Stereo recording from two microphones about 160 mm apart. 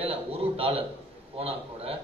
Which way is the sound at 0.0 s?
35° right (ahead or behind).